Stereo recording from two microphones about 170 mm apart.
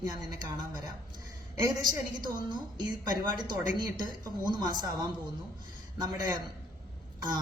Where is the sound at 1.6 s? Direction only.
25° right (ahead or behind).